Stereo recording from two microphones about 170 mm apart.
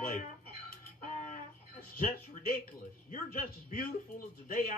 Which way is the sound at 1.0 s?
45° left (ahead or behind).